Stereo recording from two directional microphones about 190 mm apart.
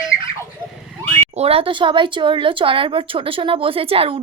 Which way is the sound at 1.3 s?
30° right (ahead or behind).